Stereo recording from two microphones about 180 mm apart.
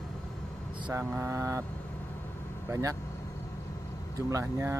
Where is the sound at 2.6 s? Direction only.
15° right (ahead or behind).